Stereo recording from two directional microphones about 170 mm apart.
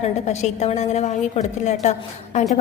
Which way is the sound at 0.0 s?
40° left (ahead or behind).